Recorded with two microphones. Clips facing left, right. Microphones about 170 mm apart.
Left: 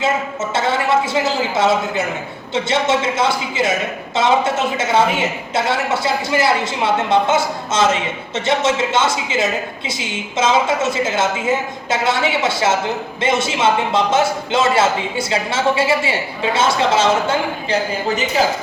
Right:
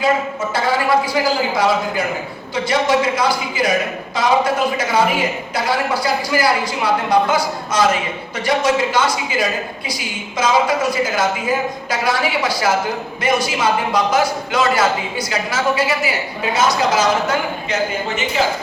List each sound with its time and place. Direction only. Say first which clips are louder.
0.5 s a man's voice: even; 25° left (ahead or behind)